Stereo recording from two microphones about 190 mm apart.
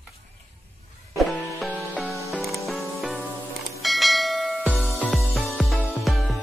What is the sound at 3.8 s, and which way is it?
Church bell, centre (ahead or behind).